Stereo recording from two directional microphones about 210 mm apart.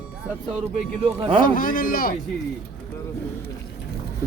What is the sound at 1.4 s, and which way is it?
Speech, 40° left (ahead or behind).